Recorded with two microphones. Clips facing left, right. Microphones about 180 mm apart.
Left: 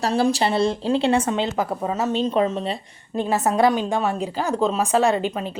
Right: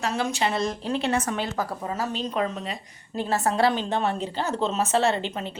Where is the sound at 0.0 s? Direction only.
35° left (ahead or behind).